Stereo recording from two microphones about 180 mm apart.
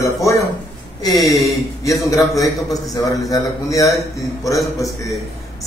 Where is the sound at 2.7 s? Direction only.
20° left (ahead or behind).